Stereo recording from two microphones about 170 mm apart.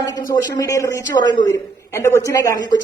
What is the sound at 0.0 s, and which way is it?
A woman's voice, 20° left (ahead or behind).